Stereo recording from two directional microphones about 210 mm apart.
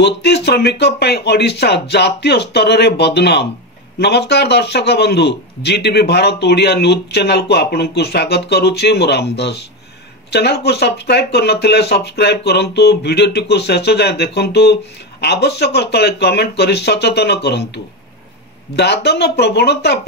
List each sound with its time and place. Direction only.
0.0 s speech: 50° left (ahead or behind)
18.8 s speech: 55° left (ahead or behind)